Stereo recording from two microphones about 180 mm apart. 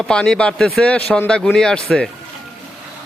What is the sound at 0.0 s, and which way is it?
Speech, 5° left (ahead or behind).